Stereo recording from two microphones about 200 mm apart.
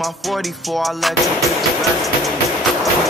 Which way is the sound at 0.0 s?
Centre (ahead or behind).